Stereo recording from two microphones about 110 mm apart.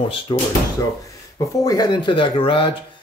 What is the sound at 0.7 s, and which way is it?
Speech, 30° left (ahead or behind).